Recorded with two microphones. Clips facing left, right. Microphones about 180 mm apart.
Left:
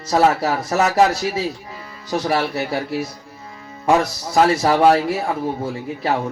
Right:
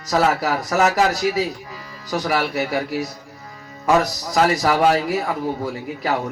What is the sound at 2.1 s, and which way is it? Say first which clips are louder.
A man's voice: left 1 dB; 30° left (ahead or behind).